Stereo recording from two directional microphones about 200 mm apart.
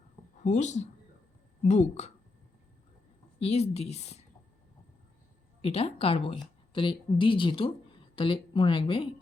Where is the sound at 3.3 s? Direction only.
30° left (ahead or behind).